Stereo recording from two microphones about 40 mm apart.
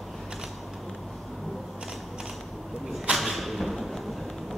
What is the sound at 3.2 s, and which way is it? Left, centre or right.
Thump, centre.